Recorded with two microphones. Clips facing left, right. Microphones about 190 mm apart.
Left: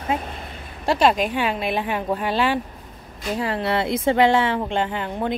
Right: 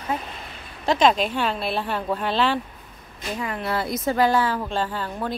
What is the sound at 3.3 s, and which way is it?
Speech, 30° left (ahead or behind).